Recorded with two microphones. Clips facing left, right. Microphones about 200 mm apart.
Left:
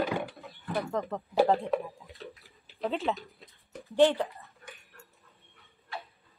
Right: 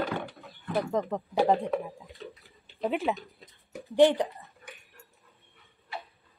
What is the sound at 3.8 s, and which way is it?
Speech, 15° right (ahead or behind).